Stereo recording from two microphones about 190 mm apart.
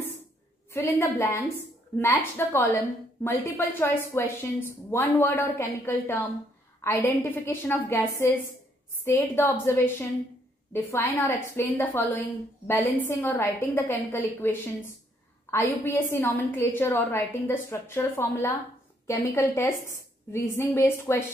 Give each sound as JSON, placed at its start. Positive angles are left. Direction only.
{"t": 0.7, "sound": "a woman's voice", "side_deg": 15}